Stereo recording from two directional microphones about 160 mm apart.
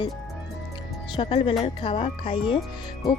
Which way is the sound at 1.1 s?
35° left (ahead or behind).